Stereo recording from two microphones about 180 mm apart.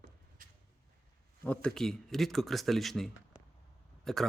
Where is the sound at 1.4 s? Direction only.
5° left (ahead or behind).